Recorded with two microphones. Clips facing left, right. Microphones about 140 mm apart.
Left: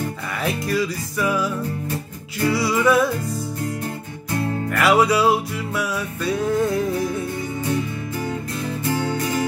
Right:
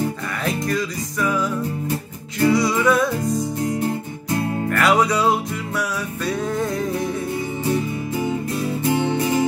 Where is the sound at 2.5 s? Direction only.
5° left (ahead or behind).